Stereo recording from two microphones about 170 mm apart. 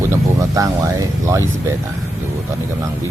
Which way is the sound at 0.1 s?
20° right (ahead or behind).